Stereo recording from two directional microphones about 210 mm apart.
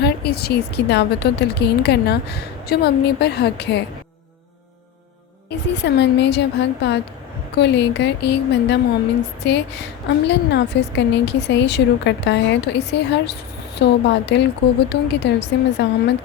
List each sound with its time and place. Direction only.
0.0 s a woman's voice: 50° left (ahead or behind)
5.5 s a woman's voice: 55° left (ahead or behind)